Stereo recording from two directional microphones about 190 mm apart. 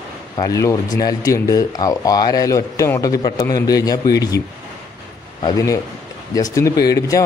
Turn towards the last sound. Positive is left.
turn(degrees=20)  # may be behind; listen again after turning